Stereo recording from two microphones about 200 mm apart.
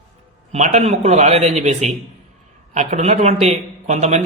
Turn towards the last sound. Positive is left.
turn(degrees=-35)  # may be behind; listen again after turning